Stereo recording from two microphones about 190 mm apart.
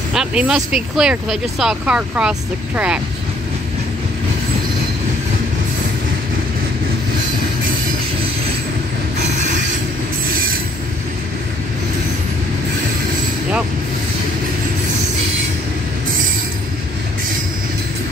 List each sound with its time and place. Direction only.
0.1 s speech: 5° right (ahead or behind)